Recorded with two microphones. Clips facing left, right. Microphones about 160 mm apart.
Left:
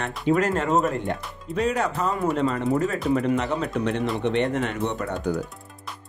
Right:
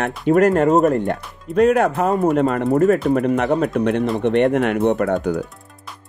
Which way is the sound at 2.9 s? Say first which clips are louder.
Right 5 dB; 55° right (ahead or behind).